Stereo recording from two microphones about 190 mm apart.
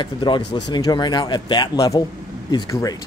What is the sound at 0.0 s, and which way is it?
Speech, 25° left (ahead or behind).